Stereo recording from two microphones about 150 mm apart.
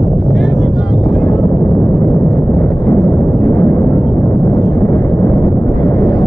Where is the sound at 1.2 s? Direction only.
20° left (ahead or behind).